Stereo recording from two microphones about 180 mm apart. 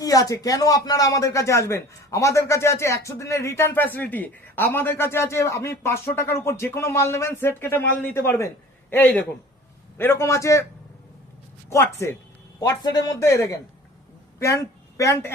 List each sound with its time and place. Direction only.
0.0 s speech: 20° left (ahead or behind)
11.7 s speech: 15° left (ahead or behind)